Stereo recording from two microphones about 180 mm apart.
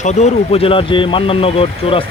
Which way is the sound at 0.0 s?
40° left (ahead or behind).